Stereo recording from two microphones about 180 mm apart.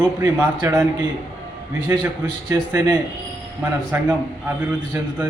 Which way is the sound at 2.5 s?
15° right (ahead or behind).